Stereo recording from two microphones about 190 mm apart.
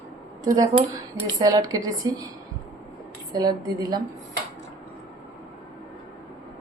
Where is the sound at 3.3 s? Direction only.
20° right (ahead or behind).